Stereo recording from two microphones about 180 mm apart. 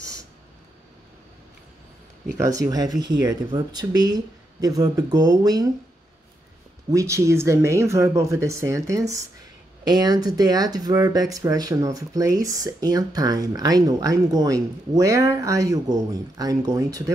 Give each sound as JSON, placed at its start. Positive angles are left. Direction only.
{"t": 2.3, "sound": "speech", "side_deg": -15}
{"t": 6.9, "sound": "speech", "side_deg": -15}